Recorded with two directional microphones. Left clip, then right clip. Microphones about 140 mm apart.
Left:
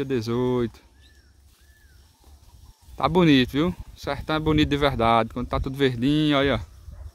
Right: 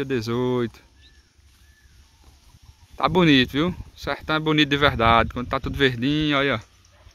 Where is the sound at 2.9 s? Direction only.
5° left (ahead or behind).